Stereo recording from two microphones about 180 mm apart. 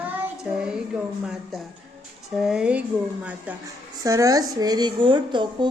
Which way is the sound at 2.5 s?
5° right (ahead or behind).